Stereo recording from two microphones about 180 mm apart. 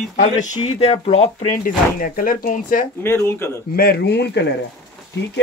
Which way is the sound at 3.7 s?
60° left (ahead or behind).